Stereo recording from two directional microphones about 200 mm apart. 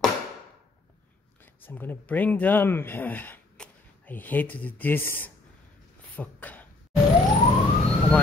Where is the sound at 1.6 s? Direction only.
10° left (ahead or behind).